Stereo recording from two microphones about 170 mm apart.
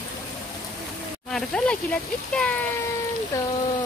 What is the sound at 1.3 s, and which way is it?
Speech, 5° left (ahead or behind).